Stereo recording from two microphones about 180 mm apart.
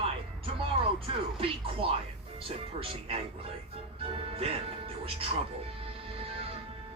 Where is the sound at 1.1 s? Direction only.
30° right (ahead or behind).